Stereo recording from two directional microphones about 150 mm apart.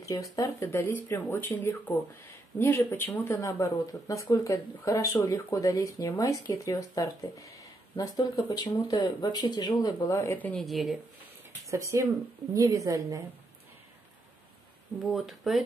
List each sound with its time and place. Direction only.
0.0 s speech: 25° left (ahead or behind); by 11.0 s centre (ahead or behind)
11.7 s a woman's voice: 20° right (ahead or behind)
15.0 s speech: centre (ahead or behind)